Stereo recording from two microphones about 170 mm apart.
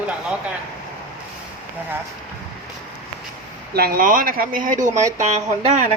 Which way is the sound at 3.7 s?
60° right (ahead or behind).